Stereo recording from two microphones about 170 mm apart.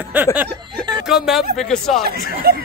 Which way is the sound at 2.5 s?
60° right (ahead or behind).